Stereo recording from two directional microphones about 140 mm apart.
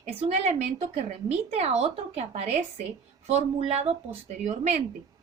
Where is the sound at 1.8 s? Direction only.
50° right (ahead or behind).